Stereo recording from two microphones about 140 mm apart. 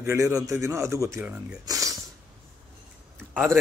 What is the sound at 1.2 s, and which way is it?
Speech, 5° right (ahead or behind).